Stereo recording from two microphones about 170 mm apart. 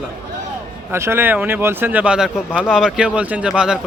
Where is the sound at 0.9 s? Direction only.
15° right (ahead or behind).